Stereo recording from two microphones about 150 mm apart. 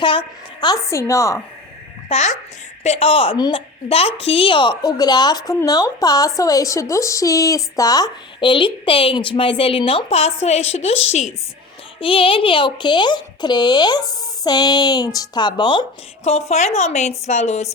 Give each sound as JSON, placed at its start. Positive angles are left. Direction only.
{"t": 0.0, "sound": "a woman's voice", "side_deg": 35}
{"t": 2.0, "sound": "a woman's voice", "side_deg": 50}
{"t": 11.9, "sound": "a woman's voice", "side_deg": 35}
{"t": 16.2, "sound": "a woman's voice", "side_deg": 45}